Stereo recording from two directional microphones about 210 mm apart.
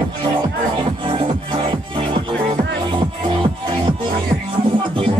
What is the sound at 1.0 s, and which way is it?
Music, 25° right (ahead or behind).